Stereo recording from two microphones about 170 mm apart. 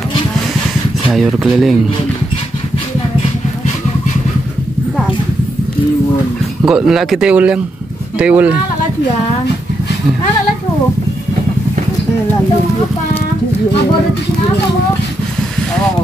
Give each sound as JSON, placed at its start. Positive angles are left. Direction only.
{"t": 1.1, "sound": "speech", "side_deg": 0}
{"t": 6.6, "sound": "speech", "side_deg": -5}